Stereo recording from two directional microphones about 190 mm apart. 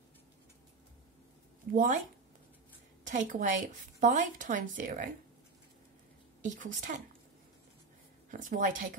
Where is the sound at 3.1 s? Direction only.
40° right (ahead or behind).